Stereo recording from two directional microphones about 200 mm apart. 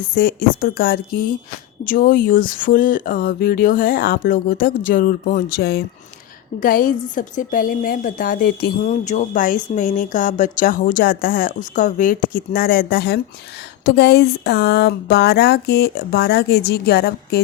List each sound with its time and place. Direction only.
0.1 s speech: 45° left (ahead or behind)